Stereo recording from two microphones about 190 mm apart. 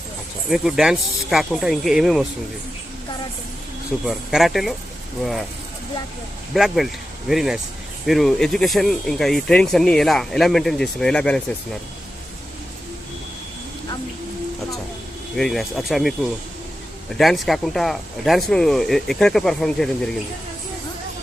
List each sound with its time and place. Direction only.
0.5 s speech: 5° right (ahead or behind)
4.0 s speech: centre (ahead or behind)
6.5 s speech: centre (ahead or behind)
15.4 s speech: centre (ahead or behind)